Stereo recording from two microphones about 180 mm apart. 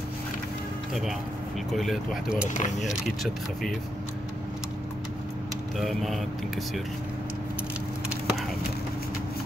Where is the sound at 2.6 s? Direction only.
40° left (ahead or behind).